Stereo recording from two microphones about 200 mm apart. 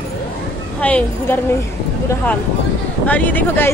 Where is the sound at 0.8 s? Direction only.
5° left (ahead or behind).